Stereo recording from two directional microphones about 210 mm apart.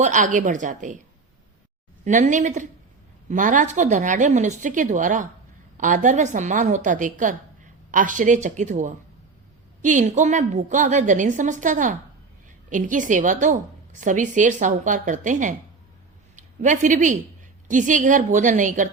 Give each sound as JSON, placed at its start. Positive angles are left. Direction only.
{"t": 0.0, "sound": "a woman's voice", "side_deg": -35}
{"t": 2.0, "sound": "a woman's voice", "side_deg": -35}